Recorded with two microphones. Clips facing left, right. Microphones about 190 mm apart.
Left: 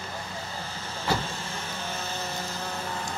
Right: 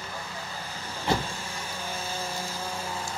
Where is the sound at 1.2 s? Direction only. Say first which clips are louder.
Left 1 dB; 10° right (ahead or behind).